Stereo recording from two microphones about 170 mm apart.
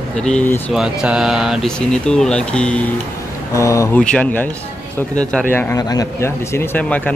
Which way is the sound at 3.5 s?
20° left (ahead or behind).